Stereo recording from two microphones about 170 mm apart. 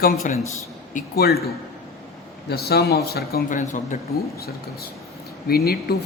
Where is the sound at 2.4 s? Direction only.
70° left (ahead or behind); by 4.0 s 50° left (ahead or behind).